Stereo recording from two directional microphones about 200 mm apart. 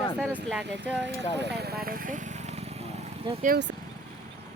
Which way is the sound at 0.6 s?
60° right (ahead or behind).